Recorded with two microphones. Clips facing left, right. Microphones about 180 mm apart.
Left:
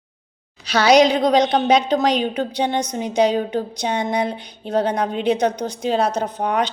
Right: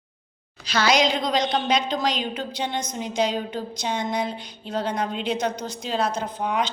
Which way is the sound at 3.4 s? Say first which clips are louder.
Left 7 dB; 60° left (ahead or behind).